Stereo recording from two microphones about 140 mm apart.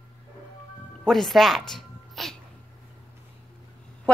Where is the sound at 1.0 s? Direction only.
Centre (ahead or behind).